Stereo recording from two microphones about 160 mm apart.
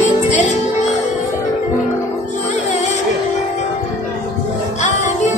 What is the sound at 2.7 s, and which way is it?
Music, 45° left (ahead or behind).